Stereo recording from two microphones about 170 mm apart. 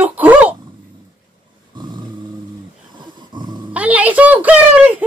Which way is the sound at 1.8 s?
25° right (ahead or behind).